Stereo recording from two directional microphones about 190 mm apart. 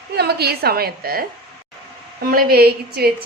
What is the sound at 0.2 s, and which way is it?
A woman's voice, 55° right (ahead or behind).